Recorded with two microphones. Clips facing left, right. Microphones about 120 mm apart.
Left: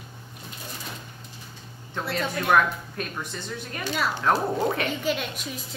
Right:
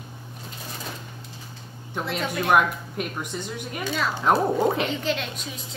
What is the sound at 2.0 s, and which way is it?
Speech, 15° right (ahead or behind).